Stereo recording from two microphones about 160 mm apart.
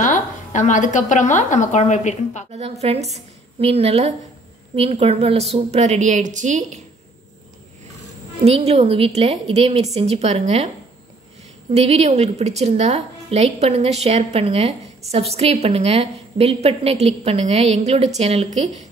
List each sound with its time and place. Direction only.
0.0 s a woman's voice: 50° left (ahead or behind)
2.5 s a woman's voice: 40° right (ahead or behind)
8.4 s a woman's voice: 40° right (ahead or behind)
11.7 s a woman's voice: 40° right (ahead or behind)